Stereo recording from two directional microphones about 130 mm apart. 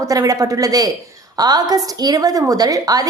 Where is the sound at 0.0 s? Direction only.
25° right (ahead or behind).